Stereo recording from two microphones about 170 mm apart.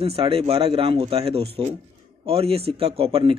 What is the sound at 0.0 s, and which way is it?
Speech, 35° right (ahead or behind).